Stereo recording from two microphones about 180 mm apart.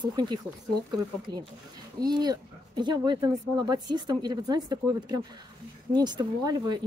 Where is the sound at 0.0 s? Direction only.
25° right (ahead or behind).